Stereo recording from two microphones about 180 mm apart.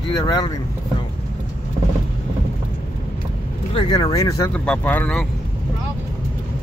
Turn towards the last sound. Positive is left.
turn(degrees=5)  # may be behind; listen again after turning